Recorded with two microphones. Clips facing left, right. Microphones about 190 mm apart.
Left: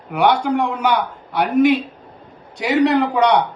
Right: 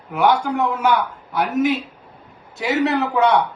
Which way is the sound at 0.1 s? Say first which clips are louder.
Left 2 dB; 5° right (ahead or behind).